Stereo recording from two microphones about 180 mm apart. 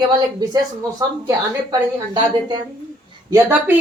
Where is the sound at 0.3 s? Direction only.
20° right (ahead or behind).